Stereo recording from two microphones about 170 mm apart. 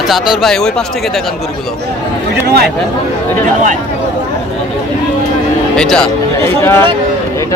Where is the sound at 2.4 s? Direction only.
70° right (ahead or behind).